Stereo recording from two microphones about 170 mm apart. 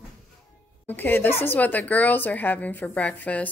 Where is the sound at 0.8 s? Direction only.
10° left (ahead or behind).